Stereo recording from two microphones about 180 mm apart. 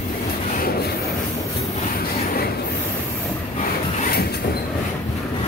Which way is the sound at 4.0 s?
55° left (ahead or behind).